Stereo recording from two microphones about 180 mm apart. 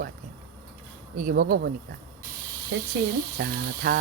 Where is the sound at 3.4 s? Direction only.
60° right (ahead or behind).